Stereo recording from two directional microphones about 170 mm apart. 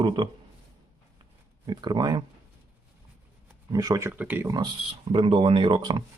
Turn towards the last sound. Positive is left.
turn(degrees=-30)  # may be behind; listen again after turning